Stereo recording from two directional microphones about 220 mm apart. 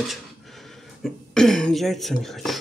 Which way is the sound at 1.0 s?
Centre (ahead or behind).